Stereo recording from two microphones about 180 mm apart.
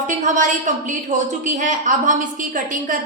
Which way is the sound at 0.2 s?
45° right (ahead or behind).